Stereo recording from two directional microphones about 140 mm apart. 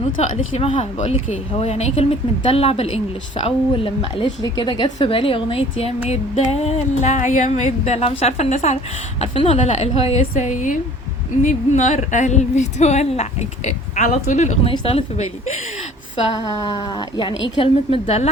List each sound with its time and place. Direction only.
0.2 s speech: 50° left (ahead or behind)
10.5 s a woman's voice: 65° left (ahead or behind)
14.7 s speech: 45° left (ahead or behind)
16.4 s speech: 25° left (ahead or behind); by 18.3 s 45° left (ahead or behind)